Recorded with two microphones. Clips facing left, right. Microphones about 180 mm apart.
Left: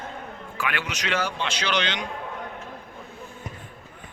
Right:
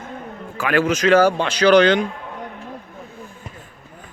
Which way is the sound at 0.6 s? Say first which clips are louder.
Right 12 dB; 45° right (ahead or behind).